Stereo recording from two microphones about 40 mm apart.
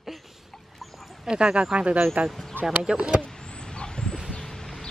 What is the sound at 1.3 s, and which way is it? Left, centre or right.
Speech, right.